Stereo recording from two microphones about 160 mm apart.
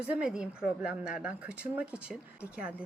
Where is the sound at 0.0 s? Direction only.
5° right (ahead or behind).